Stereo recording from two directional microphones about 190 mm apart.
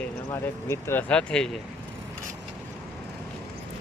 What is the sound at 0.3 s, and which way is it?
Speech, 15° left (ahead or behind).